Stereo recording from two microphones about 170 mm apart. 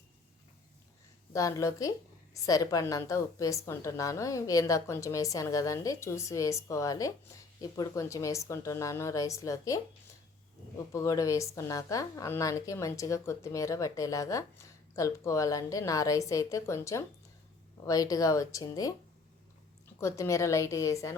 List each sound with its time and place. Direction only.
1.3 s a woman's voice: 20° left (ahead or behind)
10.9 s a woman's voice: 20° left (ahead or behind)
20.0 s a woman's voice: 15° left (ahead or behind)